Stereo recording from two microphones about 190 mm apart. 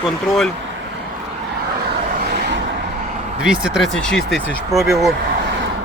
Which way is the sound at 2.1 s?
55° right (ahead or behind).